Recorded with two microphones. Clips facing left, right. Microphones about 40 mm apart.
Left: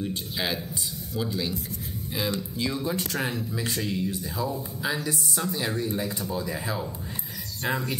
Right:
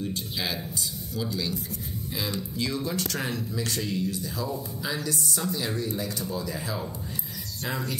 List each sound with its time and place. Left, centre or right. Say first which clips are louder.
0.0 s speech: left 1 dB; left
2.5 s speech: left 1 dB; centre